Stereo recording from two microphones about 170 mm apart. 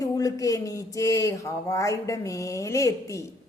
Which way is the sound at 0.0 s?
20° left (ahead or behind).